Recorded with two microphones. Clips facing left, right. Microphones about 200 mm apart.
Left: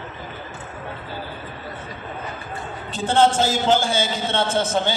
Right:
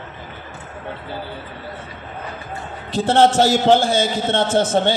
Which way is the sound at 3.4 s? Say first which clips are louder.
Right 5 dB; 70° right (ahead or behind).